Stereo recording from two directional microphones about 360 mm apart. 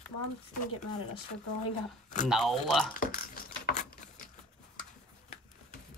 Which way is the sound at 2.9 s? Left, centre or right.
Left.